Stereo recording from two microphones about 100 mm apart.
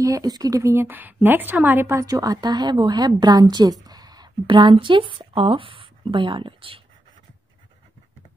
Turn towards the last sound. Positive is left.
turn(degrees=-65)  # may be behind; listen again after turning